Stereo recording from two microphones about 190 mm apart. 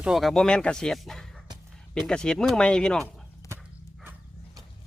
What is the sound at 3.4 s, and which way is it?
Dog, 15° left (ahead or behind).